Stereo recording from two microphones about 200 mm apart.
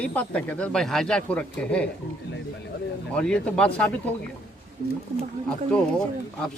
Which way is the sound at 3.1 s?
5° left (ahead or behind).